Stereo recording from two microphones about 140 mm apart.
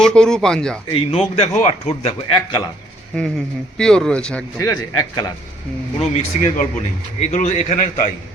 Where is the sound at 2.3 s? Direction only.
30° left (ahead or behind).